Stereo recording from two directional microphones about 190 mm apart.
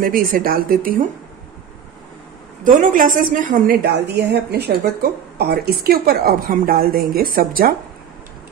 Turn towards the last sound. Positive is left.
turn(degrees=-50)  # may be behind; listen again after turning